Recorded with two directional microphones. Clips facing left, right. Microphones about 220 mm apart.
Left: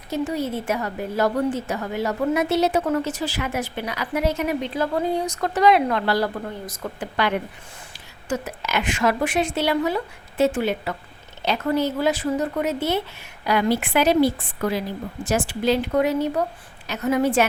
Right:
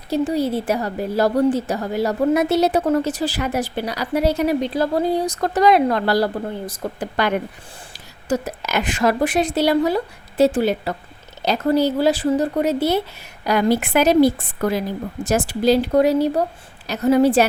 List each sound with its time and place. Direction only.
0.1 s a woman's voice: 35° right (ahead or behind)